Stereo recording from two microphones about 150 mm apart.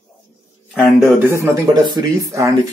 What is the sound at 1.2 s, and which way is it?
Speech, 20° right (ahead or behind).